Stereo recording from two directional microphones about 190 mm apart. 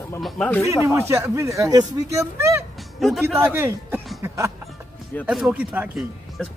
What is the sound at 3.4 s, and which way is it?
Speech, 15° right (ahead or behind).